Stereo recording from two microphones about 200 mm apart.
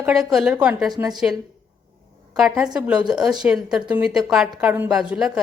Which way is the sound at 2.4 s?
Centre (ahead or behind).